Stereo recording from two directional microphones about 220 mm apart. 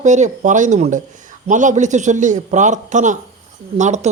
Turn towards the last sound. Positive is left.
turn(degrees=-30)  # may be behind; listen again after turning